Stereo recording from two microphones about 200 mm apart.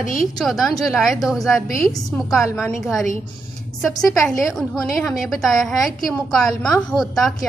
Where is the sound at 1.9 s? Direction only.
20° left (ahead or behind).